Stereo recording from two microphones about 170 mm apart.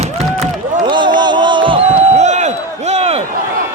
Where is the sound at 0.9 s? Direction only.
25° right (ahead or behind).